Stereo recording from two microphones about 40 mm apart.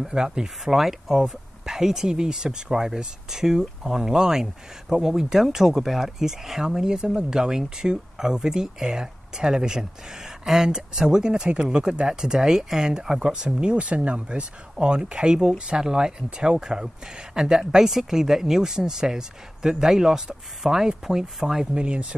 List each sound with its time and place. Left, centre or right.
0.0 s speech: centre
21.7 s speech: right